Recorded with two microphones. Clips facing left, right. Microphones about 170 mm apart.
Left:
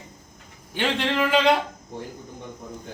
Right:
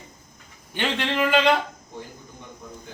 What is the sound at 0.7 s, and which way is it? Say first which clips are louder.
Speech: left 2 dB; 5° left (ahead or behind).